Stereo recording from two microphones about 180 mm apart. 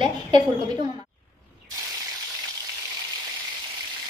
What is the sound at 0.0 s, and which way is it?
Speech, 25° right (ahead or behind).